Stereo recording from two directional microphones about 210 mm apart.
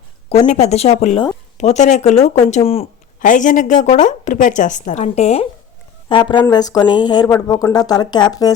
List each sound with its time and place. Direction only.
0.3 s a woman's voice: 30° left (ahead or behind)